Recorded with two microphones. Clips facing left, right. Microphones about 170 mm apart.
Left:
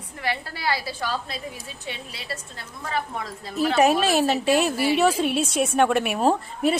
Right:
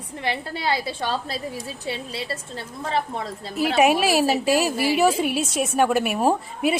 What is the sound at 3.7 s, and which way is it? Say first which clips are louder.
A woman's voice: right 1 dB; 5° right (ahead or behind).